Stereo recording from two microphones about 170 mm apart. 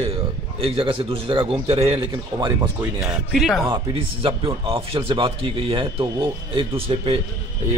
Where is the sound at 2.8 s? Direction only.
5° right (ahead or behind).